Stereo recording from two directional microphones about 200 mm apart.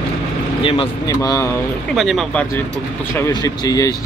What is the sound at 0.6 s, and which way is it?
Speech, 25° left (ahead or behind).